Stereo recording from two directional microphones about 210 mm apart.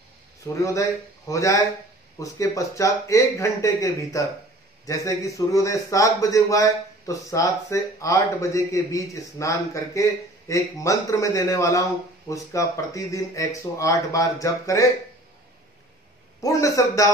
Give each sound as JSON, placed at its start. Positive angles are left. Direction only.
{"t": 0.6, "sound": "a man's voice", "side_deg": 15}
{"t": 16.3, "sound": "a man's voice", "side_deg": 15}